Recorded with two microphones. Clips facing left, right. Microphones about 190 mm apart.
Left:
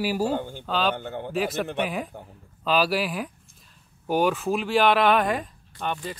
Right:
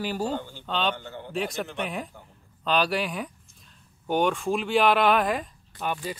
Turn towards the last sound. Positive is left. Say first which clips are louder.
# even
turn(degrees=-5)  # may be behind; listen again after turning